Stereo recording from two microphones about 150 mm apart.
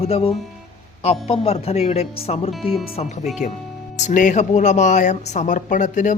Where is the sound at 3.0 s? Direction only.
50° left (ahead or behind).